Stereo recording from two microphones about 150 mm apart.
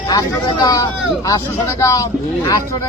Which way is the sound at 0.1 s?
25° left (ahead or behind).